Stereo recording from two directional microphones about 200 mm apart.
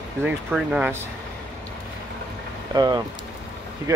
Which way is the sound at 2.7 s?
20° right (ahead or behind).